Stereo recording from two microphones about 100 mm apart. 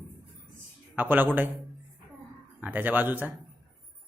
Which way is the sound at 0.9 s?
20° right (ahead or behind).